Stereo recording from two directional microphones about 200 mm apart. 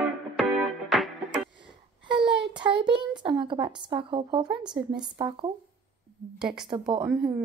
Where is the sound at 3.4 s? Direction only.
25° right (ahead or behind).